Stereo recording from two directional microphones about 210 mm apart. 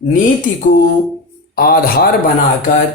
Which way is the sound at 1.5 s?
45° left (ahead or behind).